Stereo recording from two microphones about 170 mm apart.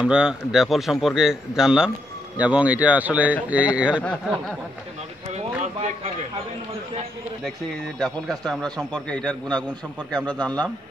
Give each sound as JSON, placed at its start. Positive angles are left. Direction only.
{"t": 0.0, "sound": "a man's voice", "side_deg": -5}
{"t": 4.0, "sound": "speech", "side_deg": 5}
{"t": 5.6, "sound": "a sound", "side_deg": -45}
{"t": 8.0, "sound": "speech", "side_deg": 5}